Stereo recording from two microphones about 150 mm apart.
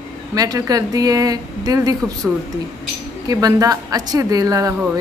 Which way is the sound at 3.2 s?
25° right (ahead or behind).